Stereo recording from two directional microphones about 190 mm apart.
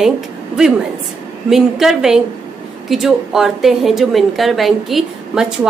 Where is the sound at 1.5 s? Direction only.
Centre (ahead or behind).